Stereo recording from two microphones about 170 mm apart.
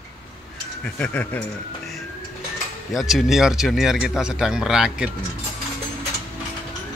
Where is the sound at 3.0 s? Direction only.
Centre (ahead or behind).